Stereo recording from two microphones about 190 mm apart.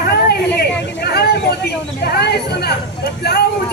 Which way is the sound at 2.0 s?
55° left (ahead or behind).